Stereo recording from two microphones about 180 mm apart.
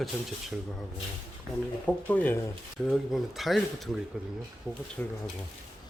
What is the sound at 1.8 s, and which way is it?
Speech, 10° left (ahead or behind).